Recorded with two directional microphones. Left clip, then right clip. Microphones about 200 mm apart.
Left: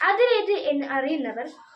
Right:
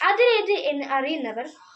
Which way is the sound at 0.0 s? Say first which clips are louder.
Right 1 dB; 15° left (ahead or behind).